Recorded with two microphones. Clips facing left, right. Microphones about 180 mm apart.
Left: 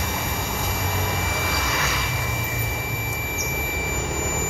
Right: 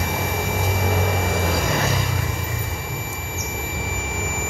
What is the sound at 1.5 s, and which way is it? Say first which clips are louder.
Sine wave: right 5 dB; 45° right (ahead or behind).